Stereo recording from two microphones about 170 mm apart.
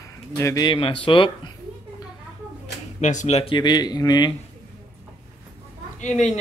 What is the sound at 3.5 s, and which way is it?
Speech, 25° left (ahead or behind).